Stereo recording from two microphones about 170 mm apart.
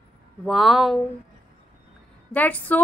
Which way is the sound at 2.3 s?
10° left (ahead or behind).